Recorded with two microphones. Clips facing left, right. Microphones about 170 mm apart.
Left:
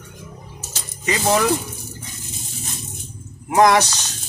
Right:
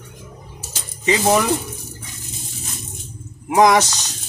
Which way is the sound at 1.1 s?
15° right (ahead or behind).